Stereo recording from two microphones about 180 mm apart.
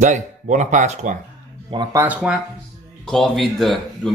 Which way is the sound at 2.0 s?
5° right (ahead or behind).